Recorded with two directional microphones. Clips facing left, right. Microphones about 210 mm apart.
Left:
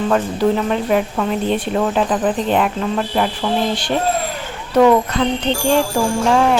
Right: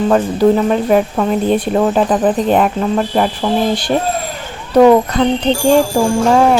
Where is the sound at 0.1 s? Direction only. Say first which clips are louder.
Right 5 dB; 40° right (ahead or behind).